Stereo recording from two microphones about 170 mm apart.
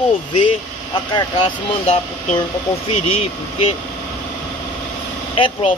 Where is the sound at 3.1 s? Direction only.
35° left (ahead or behind).